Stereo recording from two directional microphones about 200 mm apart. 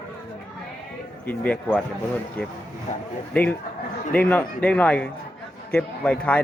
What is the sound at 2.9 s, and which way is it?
Speech, 35° left (ahead or behind).